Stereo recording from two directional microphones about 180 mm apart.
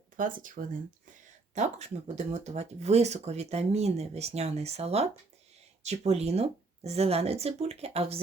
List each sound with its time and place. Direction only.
0.2 s speech: 50° right (ahead or behind)